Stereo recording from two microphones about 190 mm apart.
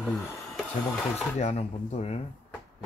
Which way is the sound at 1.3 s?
35° left (ahead or behind).